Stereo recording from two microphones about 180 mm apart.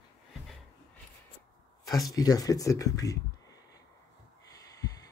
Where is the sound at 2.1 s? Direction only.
20° left (ahead or behind).